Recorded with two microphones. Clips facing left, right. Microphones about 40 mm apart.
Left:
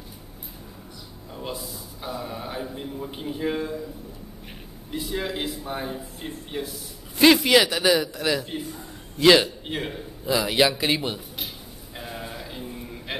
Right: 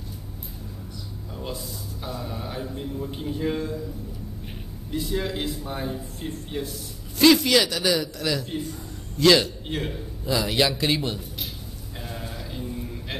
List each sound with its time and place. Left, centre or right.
1.3 s speech: centre
4.9 s a man's voice: centre
12.0 s sheep: centre